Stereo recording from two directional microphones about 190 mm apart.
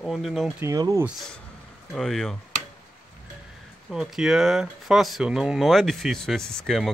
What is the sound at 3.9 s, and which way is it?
Speech, 5° right (ahead or behind).